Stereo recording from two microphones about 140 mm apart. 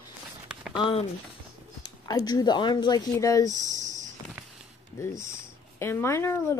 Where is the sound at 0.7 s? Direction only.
40° left (ahead or behind).